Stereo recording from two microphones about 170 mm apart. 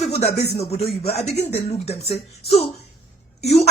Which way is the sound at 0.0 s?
40° left (ahead or behind).